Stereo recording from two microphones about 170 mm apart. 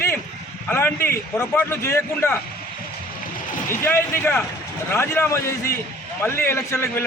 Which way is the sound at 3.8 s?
15° left (ahead or behind).